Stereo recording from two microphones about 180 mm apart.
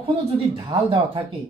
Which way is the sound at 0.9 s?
30° right (ahead or behind).